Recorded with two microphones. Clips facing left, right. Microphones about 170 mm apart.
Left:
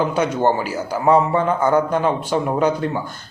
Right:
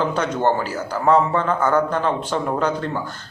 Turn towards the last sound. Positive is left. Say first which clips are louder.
# left 3 dB
turn(degrees=15)  # may be behind; listen again after turning